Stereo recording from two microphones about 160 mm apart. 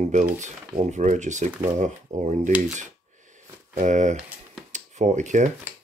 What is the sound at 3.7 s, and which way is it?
Speech, 50° right (ahead or behind).